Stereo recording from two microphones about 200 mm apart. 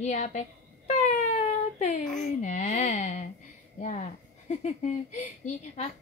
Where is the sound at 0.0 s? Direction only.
35° left (ahead or behind).